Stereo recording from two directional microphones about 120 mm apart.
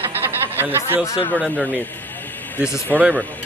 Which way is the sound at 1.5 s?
15° left (ahead or behind).